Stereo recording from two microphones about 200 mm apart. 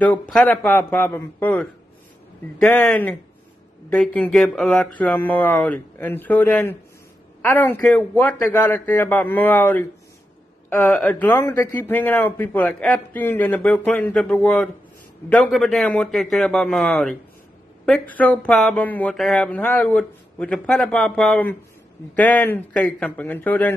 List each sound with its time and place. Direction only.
0.0 s a man's voice: 5° left (ahead or behind)
10.9 s a man's voice: 5° left (ahead or behind)